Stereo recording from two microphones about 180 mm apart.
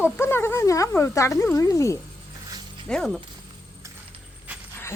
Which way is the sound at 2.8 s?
5° left (ahead or behind).